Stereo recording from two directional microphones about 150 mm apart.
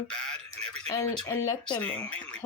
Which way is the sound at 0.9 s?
20° left (ahead or behind).